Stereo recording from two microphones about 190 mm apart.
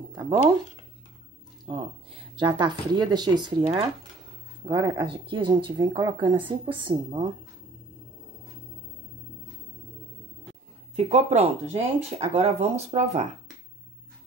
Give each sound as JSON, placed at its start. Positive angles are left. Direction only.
{"t": 0.1, "sound": "a sound", "side_deg": -20}
{"t": 1.7, "sound": "speech", "side_deg": -30}
{"t": 11.0, "sound": "speech", "side_deg": -35}